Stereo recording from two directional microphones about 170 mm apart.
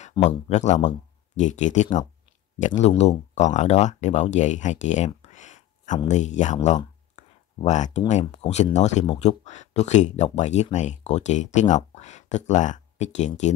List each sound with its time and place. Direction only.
0.2 s speech: 45° left (ahead or behind)
7.2 s a sound: 45° left (ahead or behind)
8.1 s speech: 45° left (ahead or behind)